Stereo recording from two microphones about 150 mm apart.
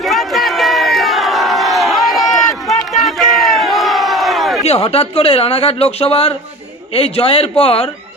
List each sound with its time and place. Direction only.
0.0 s crowd: centre (ahead or behind)
4.6 s a man's voice: 40° left (ahead or behind)